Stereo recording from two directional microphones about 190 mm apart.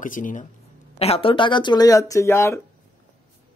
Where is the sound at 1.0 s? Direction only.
30° left (ahead or behind); by 2.6 s 15° left (ahead or behind).